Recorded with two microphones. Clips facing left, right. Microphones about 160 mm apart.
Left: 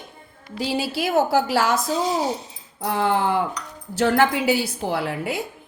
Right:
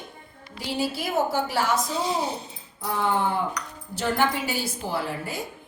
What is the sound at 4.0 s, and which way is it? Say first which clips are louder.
A woman's voice: left 6 dB; 75° left (ahead or behind).